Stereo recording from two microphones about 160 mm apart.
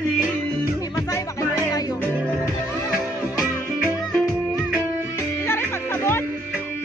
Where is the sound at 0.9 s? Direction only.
20° left (ahead or behind).